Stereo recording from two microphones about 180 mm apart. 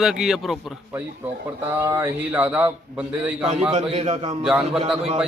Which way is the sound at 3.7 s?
40° right (ahead or behind).